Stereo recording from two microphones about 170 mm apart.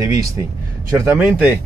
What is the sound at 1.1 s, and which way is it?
Speech, 5° right (ahead or behind).